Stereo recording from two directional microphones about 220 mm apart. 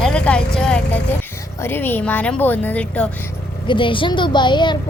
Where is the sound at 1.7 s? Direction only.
10° left (ahead or behind).